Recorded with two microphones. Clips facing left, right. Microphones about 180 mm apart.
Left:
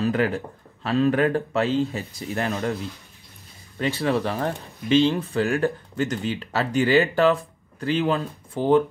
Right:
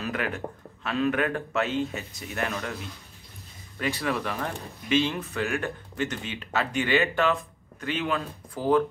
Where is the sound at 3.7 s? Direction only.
30° left (ahead or behind).